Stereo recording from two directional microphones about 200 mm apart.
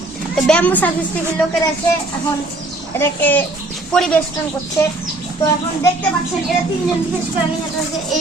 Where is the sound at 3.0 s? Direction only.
10° left (ahead or behind).